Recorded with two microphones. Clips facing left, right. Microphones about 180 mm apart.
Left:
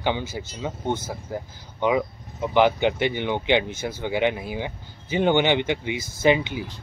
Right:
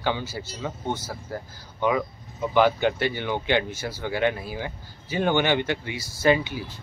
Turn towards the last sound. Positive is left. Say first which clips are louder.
# left 1 dB
turn(degrees=20)  # may be behind; listen again after turning